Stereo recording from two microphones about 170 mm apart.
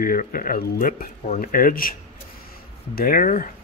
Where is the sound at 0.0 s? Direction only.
55° left (ahead or behind).